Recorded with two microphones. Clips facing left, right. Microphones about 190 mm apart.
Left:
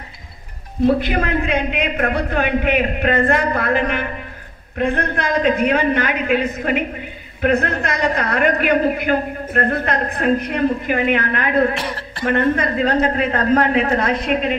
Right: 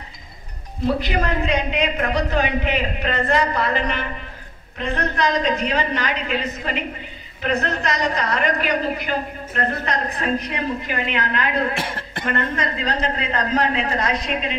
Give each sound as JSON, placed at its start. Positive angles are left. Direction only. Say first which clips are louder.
{"t": 0.8, "sound": "a woman's voice", "louder": "left 4 dB", "side_deg": 55}
{"t": 11.8, "sound": "speech", "louder": "left 4 dB", "side_deg": -50}
{"t": 12.3, "sound": "a woman's voice", "louder": "left 7 dB", "side_deg": 55}